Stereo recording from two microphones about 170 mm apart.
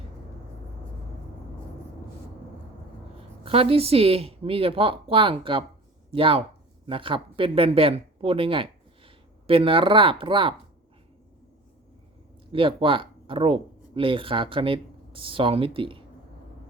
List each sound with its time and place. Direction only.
3.4 s speech: 35° right (ahead or behind)
12.5 s speech: 30° right (ahead or behind)